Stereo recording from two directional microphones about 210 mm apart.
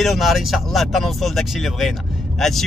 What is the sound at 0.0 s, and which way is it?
Speech, centre (ahead or behind).